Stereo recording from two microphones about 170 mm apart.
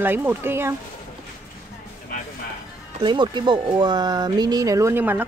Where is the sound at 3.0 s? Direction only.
25° right (ahead or behind).